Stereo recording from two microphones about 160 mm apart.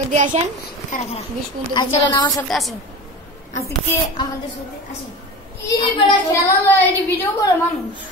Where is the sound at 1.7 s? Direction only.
25° left (ahead or behind).